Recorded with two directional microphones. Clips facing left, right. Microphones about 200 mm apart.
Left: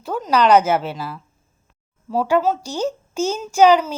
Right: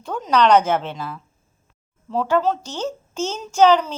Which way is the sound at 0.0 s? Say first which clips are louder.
Even; 5° left (ahead or behind).